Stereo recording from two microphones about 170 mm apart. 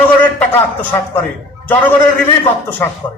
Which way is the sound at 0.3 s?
10° left (ahead or behind).